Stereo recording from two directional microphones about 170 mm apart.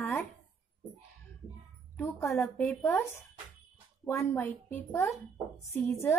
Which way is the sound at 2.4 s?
5° left (ahead or behind).